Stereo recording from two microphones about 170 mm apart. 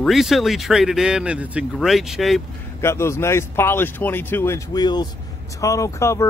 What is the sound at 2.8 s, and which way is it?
Speech, 15° left (ahead or behind).